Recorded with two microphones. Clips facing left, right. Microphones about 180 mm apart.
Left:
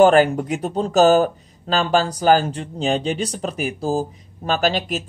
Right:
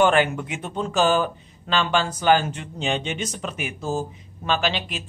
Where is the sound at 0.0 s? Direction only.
40° left (ahead or behind).